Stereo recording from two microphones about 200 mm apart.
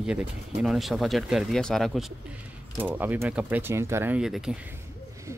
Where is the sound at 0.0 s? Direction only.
5° right (ahead or behind).